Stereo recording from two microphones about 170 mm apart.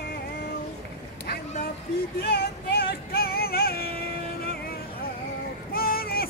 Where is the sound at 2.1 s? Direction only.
65° left (ahead or behind).